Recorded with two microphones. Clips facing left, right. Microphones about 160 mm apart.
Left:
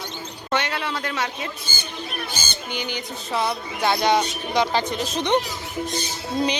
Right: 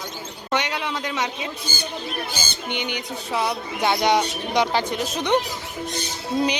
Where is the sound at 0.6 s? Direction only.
15° right (ahead or behind).